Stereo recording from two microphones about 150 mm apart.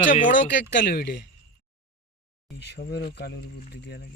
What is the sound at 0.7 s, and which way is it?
Speech, 90° left.